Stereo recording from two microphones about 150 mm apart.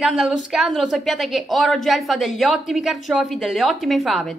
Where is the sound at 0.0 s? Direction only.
Centre (ahead or behind).